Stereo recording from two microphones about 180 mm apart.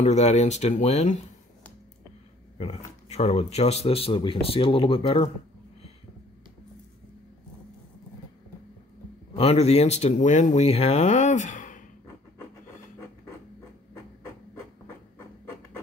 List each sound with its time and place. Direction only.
0.0 s speech: 40° left (ahead or behind)
2.5 s speech: 35° left (ahead or behind)
9.3 s speech: 35° left (ahead or behind)